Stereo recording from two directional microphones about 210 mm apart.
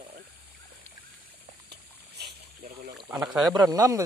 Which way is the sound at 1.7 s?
50° right (ahead or behind).